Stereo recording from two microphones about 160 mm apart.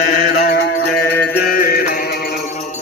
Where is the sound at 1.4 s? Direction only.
65° left (ahead or behind).